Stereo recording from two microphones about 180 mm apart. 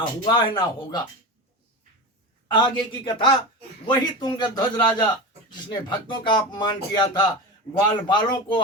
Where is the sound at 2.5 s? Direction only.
25° left (ahead or behind).